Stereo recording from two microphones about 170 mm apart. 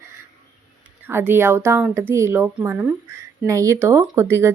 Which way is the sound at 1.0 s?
10° right (ahead or behind).